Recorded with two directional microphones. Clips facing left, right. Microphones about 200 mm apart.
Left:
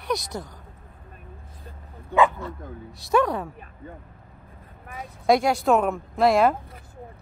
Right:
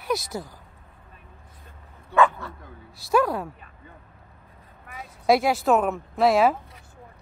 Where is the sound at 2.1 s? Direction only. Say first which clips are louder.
Even; 15° left (ahead or behind).